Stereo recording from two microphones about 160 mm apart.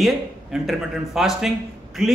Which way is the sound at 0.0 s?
Centre (ahead or behind).